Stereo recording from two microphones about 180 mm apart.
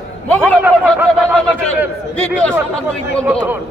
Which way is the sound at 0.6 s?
10° right (ahead or behind).